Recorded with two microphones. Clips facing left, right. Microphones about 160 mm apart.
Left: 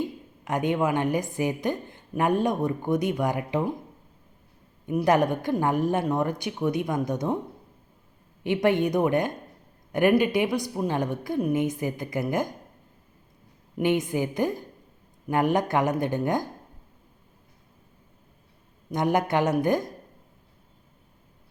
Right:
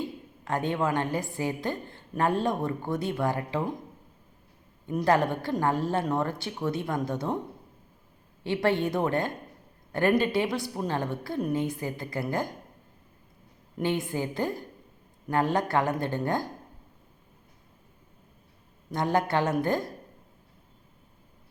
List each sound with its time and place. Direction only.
0.4 s a woman's voice: 15° left (ahead or behind)
4.9 s a woman's voice: 15° left (ahead or behind)
8.4 s a woman's voice: 15° left (ahead or behind)
13.7 s a woman's voice: 15° left (ahead or behind)
18.9 s a woman's voice: 20° left (ahead or behind)